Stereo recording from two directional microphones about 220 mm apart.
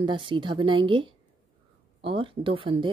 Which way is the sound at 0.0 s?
20° right (ahead or behind).